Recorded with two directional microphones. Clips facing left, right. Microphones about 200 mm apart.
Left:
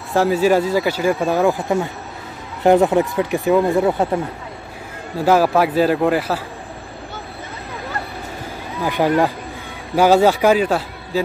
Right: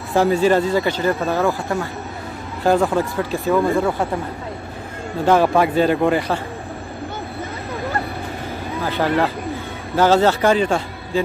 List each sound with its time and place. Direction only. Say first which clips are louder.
0.1 s speech: even; 5° left (ahead or behind)
2.6 s speech: left 4 dB; 20° left (ahead or behind)
5.2 s a man's voice: even; 5° left (ahead or behind)
8.8 s speech: left 3 dB; 15° left (ahead or behind)